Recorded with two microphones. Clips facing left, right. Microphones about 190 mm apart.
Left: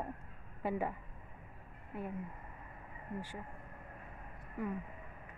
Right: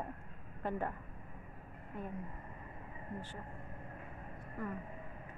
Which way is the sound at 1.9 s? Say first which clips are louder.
Left 2 dB; 10° left (ahead or behind).